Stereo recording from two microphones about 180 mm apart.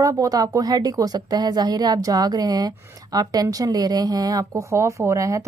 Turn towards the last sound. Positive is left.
turn(degrees=-15)  # may be behind; listen again after turning